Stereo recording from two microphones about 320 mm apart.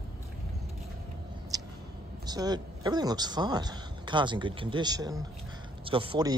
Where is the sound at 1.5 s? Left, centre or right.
Centre.